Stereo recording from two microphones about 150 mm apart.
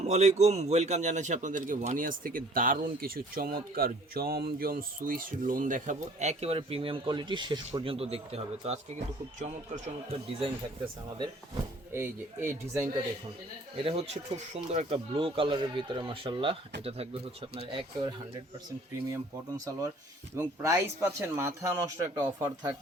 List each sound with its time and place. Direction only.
0.0 s a man's voice: 50° right (ahead or behind)
11.9 s speech: 15° right (ahead or behind)
13.7 s speech: 40° right (ahead or behind)
19.1 s speech: 20° right (ahead or behind)